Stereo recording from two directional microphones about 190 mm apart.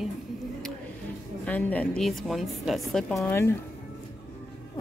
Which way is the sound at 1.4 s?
5° left (ahead or behind).